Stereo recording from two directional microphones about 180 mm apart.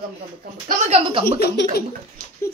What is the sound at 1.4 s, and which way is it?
Speech, 60° left (ahead or behind).